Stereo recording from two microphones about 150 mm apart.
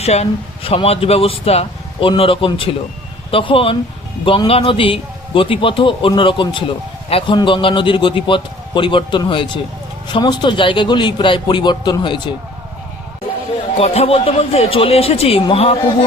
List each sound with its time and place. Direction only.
0.0 s speech: 45° left (ahead or behind)
13.7 s speech: 45° left (ahead or behind)